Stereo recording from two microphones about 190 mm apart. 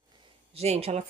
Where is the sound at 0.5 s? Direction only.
30° right (ahead or behind).